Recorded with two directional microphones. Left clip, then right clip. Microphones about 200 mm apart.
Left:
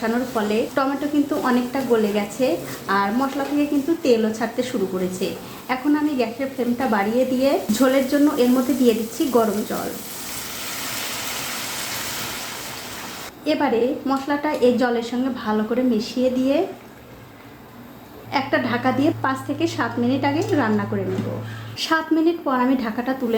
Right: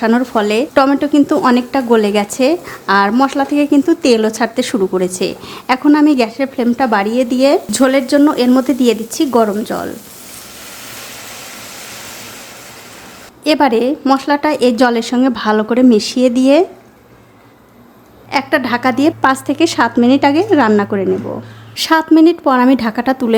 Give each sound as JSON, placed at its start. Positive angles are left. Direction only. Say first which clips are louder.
{"t": 0.0, "sound": "a woman's voice", "louder": "right 9 dB", "side_deg": -50}
{"t": 13.4, "sound": "a woman's voice", "louder": "right 8 dB", "side_deg": -45}
{"t": 18.3, "sound": "a woman's voice", "louder": "right 7 dB", "side_deg": -35}